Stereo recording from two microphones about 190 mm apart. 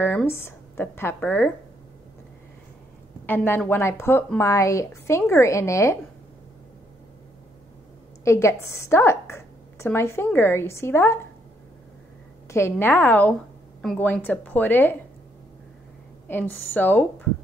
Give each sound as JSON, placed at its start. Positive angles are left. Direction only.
{"t": 0.0, "sound": "speech", "side_deg": 10}
{"t": 3.3, "sound": "a woman's voice", "side_deg": 10}
{"t": 8.2, "sound": "a woman's voice", "side_deg": 15}
{"t": 12.4, "sound": "a woman's voice", "side_deg": 15}
{"t": 16.3, "sound": "a woman's voice", "side_deg": 10}